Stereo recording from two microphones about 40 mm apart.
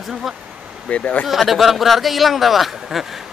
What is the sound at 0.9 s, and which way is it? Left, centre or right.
Speech, left.